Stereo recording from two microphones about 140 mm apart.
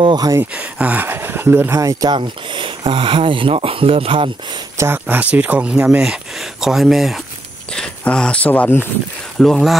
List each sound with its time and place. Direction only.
0.0 s speech: 30° right (ahead or behind)
0.4 s speech: 10° right (ahead or behind)
2.1 s speech: 35° right (ahead or behind)
4.7 s speech: 15° right (ahead or behind); by 8.8 s 15° left (ahead or behind)
9.4 s speech: centre (ahead or behind)